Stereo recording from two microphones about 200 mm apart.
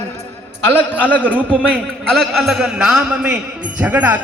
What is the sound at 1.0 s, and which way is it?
A man's voice, 5° left (ahead or behind).